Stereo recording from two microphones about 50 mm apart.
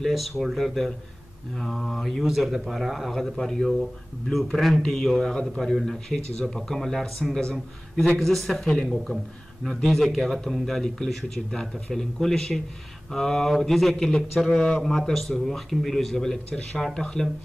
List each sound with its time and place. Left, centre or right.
0.1 s a man's voice: centre
3.3 s a man's voice: centre